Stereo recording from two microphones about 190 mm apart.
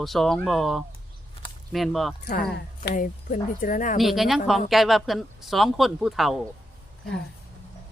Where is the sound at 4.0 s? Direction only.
Centre (ahead or behind).